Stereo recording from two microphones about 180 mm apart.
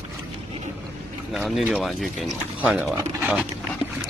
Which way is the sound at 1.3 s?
Centre (ahead or behind).